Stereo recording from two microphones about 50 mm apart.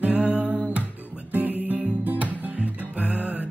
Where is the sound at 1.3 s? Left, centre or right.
Right.